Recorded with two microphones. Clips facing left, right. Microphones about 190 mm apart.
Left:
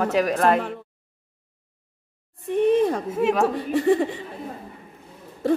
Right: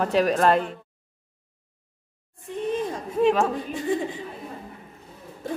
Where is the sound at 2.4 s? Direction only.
65° left (ahead or behind).